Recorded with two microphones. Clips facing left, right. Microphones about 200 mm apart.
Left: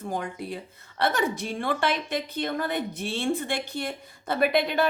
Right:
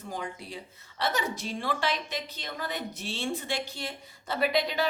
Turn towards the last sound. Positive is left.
turn(degrees=55)  # may be behind; listen again after turning